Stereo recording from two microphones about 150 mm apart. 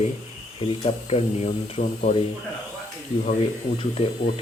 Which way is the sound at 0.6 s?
40° left (ahead or behind).